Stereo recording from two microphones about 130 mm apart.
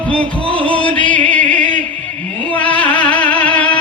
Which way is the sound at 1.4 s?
75° right (ahead or behind).